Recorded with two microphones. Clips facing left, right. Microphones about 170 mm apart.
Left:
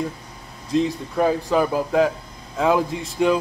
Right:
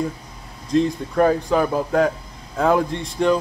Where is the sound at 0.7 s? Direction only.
Centre (ahead or behind).